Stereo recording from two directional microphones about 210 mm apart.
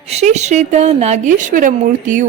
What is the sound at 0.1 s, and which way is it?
A woman's voice, 30° right (ahead or behind).